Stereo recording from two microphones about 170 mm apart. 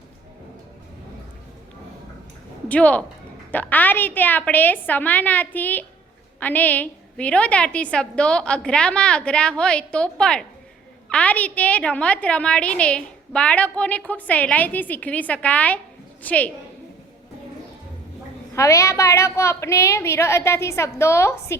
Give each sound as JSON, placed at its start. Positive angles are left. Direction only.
{"t": 2.6, "sound": "a woman's voice", "side_deg": 10}
{"t": 18.5, "sound": "a woman's voice", "side_deg": 15}